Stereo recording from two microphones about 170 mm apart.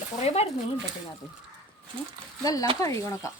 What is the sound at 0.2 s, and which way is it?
Speech, 40° left (ahead or behind).